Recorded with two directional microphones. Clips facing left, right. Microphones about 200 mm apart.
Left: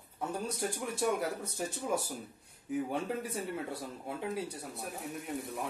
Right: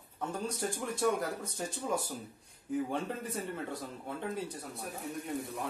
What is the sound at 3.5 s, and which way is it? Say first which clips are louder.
Speech: left 1 dB; 10° left (ahead or behind).